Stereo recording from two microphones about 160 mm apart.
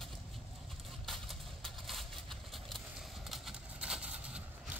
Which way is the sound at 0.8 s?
Centre (ahead or behind).